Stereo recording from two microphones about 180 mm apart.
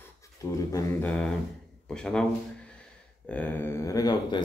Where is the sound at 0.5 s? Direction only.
15° left (ahead or behind).